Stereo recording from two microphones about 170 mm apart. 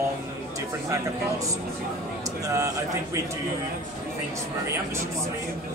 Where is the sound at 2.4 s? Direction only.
20° right (ahead or behind).